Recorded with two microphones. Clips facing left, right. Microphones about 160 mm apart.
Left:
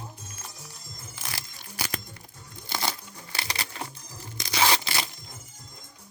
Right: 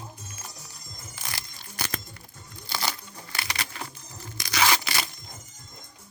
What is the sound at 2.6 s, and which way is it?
Crumpling, 20° left (ahead or behind).